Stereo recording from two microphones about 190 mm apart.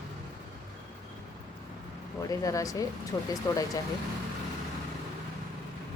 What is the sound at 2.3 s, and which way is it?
Speech, 15° left (ahead or behind).